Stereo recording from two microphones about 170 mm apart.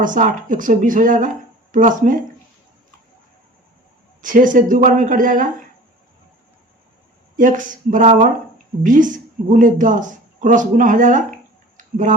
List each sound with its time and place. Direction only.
0.0 s a woman's voice: 50° right (ahead or behind)
4.2 s a woman's voice: 50° right (ahead or behind)
7.3 s a woman's voice: 50° right (ahead or behind)
11.8 s a sound: 50° right (ahead or behind)